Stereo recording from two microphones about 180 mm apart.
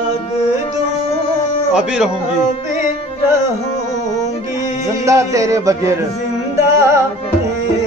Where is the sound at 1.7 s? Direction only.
5° right (ahead or behind).